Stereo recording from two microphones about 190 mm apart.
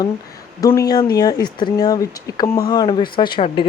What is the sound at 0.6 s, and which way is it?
Speech, 20° left (ahead or behind).